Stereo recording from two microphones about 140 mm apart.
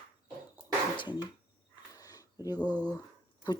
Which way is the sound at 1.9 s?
25° left (ahead or behind).